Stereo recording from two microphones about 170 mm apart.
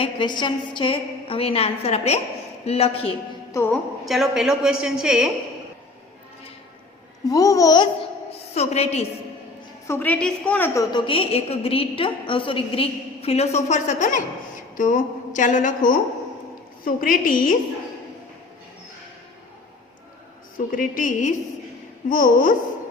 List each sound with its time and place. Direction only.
0.0 s a woman's voice: 25° left (ahead or behind)
3.5 s a woman's voice: 15° left (ahead or behind)
4.0 s a woman's voice: centre (ahead or behind)
7.3 s speech: 20° left (ahead or behind)
8.5 s a woman's voice: 40° left (ahead or behind)
9.8 s a woman's voice: 10° left (ahead or behind)
10.8 s a woman's voice: 30° left (ahead or behind); by 17.5 s 55° left (ahead or behind)
20.7 s a woman's voice: 55° left (ahead or behind)